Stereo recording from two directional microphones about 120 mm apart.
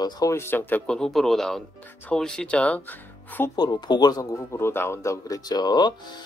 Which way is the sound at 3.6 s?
35° left (ahead or behind).